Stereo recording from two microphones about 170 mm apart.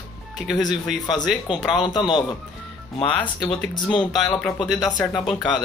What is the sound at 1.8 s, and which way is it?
Speech, 25° left (ahead or behind).